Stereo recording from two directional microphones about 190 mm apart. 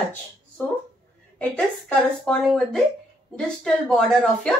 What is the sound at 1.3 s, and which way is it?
Speech, 5° left (ahead or behind).